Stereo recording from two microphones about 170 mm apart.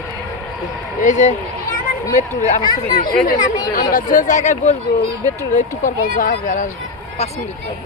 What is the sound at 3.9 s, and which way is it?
Speech, 50° left (ahead or behind).